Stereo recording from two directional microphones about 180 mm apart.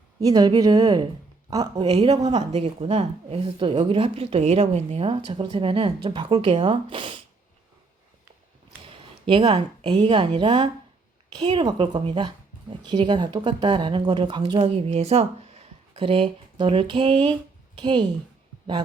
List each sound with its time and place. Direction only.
0.2 s speech: 20° right (ahead or behind)
2.5 s speech: 35° right (ahead or behind)
9.2 s a woman's voice: 25° right (ahead or behind)